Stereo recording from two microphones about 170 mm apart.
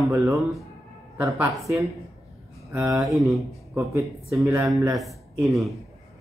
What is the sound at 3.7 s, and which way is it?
Speech, 15° right (ahead or behind).